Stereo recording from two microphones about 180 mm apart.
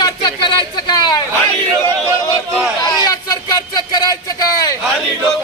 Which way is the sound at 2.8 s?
20° left (ahead or behind).